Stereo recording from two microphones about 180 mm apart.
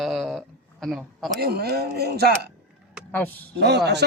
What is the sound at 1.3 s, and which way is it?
Speech, 60° right (ahead or behind).